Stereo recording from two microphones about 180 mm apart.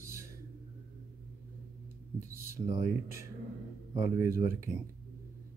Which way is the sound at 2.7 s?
20° right (ahead or behind).